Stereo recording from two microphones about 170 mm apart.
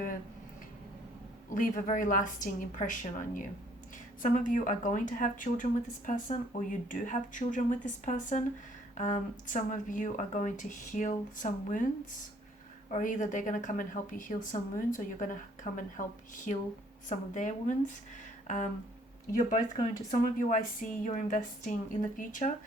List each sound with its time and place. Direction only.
1.5 s a woman's voice: 50° left (ahead or behind)
12.9 s a woman's voice: 50° left (ahead or behind)
18.4 s a sound: 45° left (ahead or behind)
20.1 s a woman's voice: 50° left (ahead or behind)